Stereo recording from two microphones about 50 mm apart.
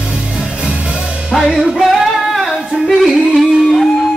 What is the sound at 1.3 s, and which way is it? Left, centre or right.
Music, centre.